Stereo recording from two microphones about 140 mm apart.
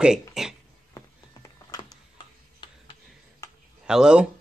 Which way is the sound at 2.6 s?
30° left (ahead or behind).